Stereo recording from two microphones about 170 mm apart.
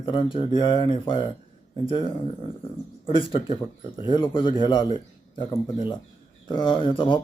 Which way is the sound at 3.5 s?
30° left (ahead or behind).